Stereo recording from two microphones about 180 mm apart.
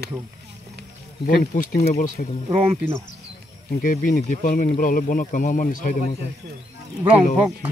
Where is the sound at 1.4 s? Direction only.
50° left (ahead or behind).